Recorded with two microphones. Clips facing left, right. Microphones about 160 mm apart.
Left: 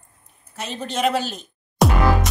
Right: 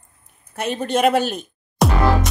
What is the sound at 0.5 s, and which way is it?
Speech, 55° right (ahead or behind).